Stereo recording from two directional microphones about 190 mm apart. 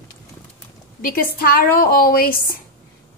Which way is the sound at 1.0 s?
50° left (ahead or behind).